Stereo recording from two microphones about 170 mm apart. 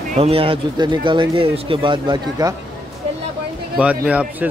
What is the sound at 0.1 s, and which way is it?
Speech, 35° right (ahead or behind).